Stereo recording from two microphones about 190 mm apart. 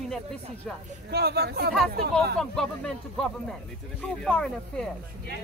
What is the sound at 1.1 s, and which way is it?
Speech, 55° right (ahead or behind).